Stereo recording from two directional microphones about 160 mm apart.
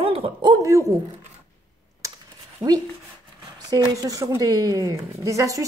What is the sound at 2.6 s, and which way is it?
Speech, 20° right (ahead or behind).